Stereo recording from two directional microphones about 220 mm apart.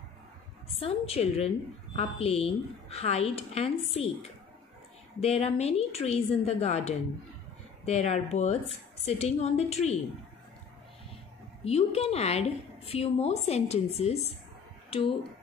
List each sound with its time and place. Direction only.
0.7 s a woman's voice: 25° left (ahead or behind)
11.6 s a woman's voice: 25° left (ahead or behind)